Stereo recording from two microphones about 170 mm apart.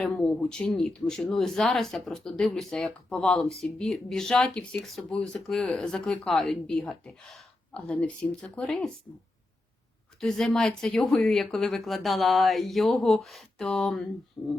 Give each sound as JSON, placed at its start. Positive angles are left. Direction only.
{"t": 0.0, "sound": "speech", "side_deg": 5}
{"t": 10.2, "sound": "speech", "side_deg": 5}